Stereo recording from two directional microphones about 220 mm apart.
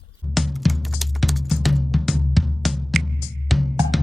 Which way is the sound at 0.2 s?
Centre (ahead or behind).